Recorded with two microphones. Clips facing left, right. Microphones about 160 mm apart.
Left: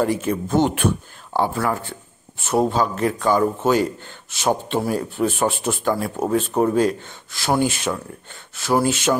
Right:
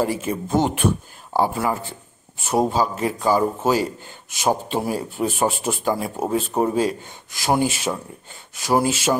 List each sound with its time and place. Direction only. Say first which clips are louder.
0.0 s a man's voice: left 2 dB; 5° right (ahead or behind)